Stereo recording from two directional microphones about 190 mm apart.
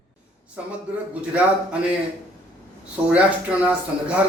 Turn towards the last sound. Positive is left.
turn(degrees=-5)  # may be behind; listen again after turning